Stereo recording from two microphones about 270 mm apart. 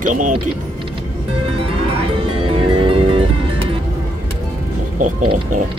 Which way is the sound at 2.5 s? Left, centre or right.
Right.